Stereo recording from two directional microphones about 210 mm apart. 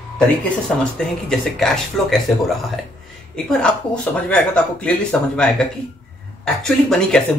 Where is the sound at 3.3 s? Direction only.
5° left (ahead or behind).